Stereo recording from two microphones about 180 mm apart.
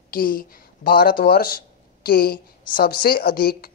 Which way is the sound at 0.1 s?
50° left (ahead or behind).